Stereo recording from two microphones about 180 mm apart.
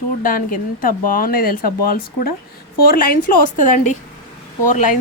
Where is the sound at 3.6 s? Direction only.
45° left (ahead or behind).